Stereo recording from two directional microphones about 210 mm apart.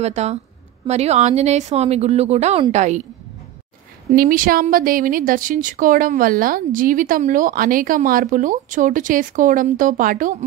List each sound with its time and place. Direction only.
0.0 s speech: 30° right (ahead or behind)
4.1 s speech: 45° right (ahead or behind)